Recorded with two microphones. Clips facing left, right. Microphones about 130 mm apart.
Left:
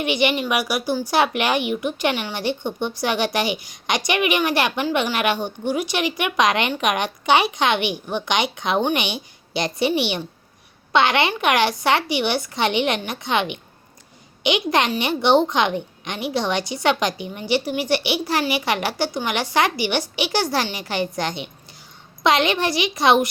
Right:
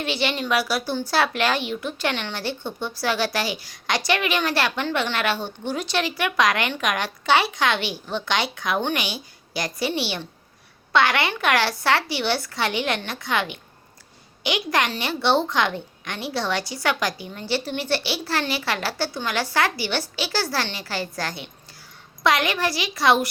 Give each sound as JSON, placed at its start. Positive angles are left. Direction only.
{"t": 0.0, "sound": "speech", "side_deg": 15}